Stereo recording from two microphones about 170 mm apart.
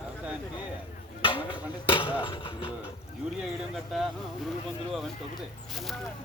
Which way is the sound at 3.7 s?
Centre (ahead or behind).